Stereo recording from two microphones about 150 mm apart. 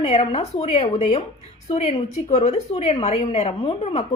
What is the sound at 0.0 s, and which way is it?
A woman's voice, 40° left (ahead or behind).